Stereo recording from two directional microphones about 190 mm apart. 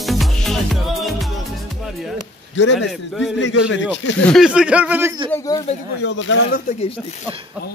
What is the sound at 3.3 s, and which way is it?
Speech, 70° left (ahead or behind).